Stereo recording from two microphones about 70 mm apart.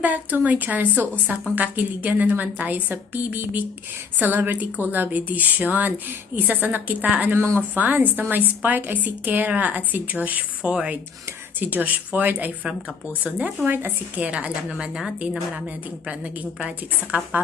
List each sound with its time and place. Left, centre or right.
0.0 s speech: right
7.3 s speech: right
7.8 s speech: right
13.7 s speech: right
14.2 s a woman's voice: centre